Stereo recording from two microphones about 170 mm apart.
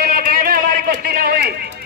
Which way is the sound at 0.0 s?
60° right (ahead or behind).